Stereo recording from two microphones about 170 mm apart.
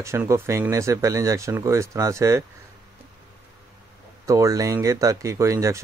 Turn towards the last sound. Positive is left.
turn(degrees=-15)  # may be behind; listen again after turning